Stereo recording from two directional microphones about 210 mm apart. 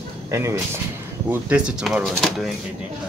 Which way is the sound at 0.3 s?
10° right (ahead or behind).